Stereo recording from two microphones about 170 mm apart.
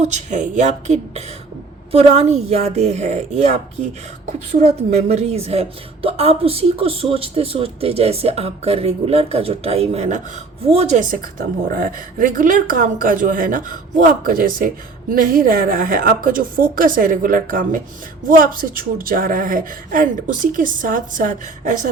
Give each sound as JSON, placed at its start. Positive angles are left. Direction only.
{"t": 0.0, "sound": "a woman's voice", "side_deg": -45}